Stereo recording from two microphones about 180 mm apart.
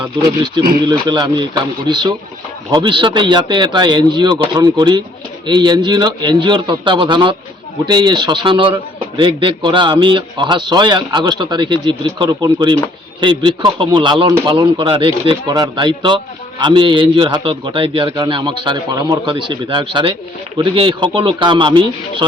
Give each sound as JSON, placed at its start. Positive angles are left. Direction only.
{"t": 0.0, "sound": "speech", "side_deg": -25}